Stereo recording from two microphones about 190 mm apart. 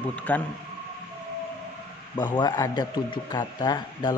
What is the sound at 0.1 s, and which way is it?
Speech, 10° left (ahead or behind).